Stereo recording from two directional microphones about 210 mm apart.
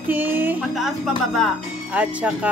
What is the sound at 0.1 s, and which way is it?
A woman's voice, 10° right (ahead or behind).